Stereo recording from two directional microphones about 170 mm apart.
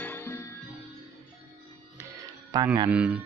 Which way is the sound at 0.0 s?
15° left (ahead or behind).